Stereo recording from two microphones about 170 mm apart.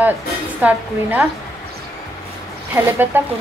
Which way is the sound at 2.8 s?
10° right (ahead or behind).